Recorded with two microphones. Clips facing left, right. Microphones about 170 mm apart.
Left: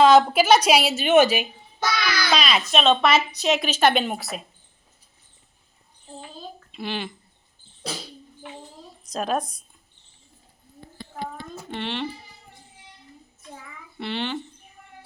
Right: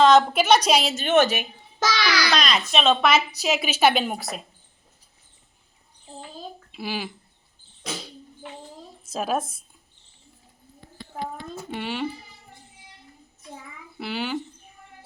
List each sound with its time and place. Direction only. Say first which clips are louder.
0.0 s a woman's voice: left 1 dB; 5° left (ahead or behind)
1.8 s babbling: right 2 dB; 90° right
2.3 s a woman's voice: left 1 dB; 5° left (ahead or behind)
6.7 s a child's voice: left 1 dB; 5° right (ahead or behind)
9.0 s a woman's voice: even; 5° right (ahead or behind)
11.7 s speech: even; 5° right (ahead or behind)
14.0 s a woman's voice: left 1 dB; 5° right (ahead or behind)